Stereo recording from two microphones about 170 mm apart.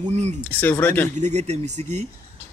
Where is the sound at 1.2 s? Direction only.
40° right (ahead or behind).